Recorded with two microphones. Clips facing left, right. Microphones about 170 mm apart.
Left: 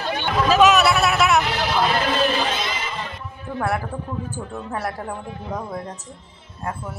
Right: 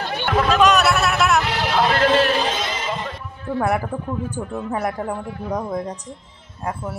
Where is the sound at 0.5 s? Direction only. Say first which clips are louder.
Left 2 dB; centre (ahead or behind).